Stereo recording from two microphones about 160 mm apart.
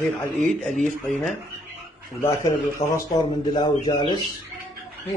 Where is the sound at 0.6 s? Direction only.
Centre (ahead or behind).